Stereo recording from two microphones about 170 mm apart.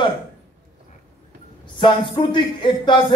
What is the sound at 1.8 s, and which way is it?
A man's voice, 30° left (ahead or behind).